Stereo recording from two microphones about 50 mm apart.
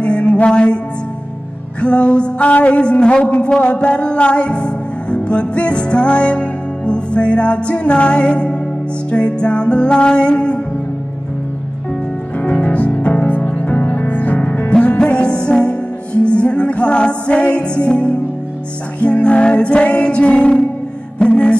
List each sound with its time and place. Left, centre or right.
0.0 s mantra: left
1.8 s a sound: left
3.4 s music: left
12.4 s music: left
19.2 s music: left